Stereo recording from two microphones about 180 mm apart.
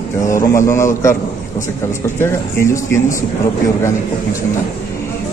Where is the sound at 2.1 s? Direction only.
15° left (ahead or behind).